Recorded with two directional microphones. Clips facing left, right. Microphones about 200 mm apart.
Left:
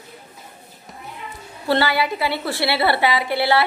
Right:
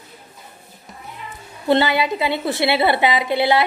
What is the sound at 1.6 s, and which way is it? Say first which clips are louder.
A woman's voice: right 3 dB; 20° right (ahead or behind).